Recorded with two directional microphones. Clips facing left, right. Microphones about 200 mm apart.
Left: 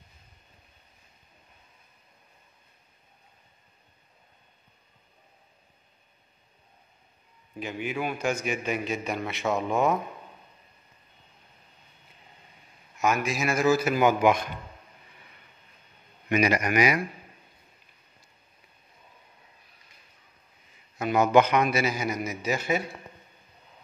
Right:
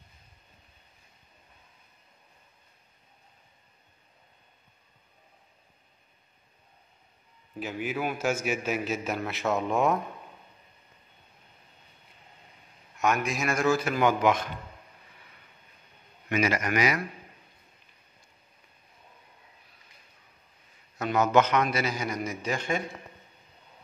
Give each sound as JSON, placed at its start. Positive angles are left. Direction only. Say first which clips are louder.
{"t": 7.5, "sound": "a man's voice", "louder": "even", "side_deg": -5}
{"t": 13.0, "sound": "a man's voice", "louder": "left 1 dB", "side_deg": 0}
{"t": 16.3, "sound": "a man's voice", "louder": "left 3 dB", "side_deg": 15}
{"t": 21.0, "sound": "a man's voice", "louder": "left 2 dB", "side_deg": 10}